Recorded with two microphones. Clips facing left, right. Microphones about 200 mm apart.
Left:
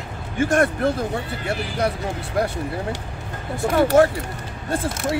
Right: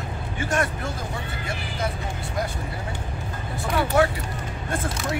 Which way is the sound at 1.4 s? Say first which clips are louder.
Left 7 dB; 70° left (ahead or behind).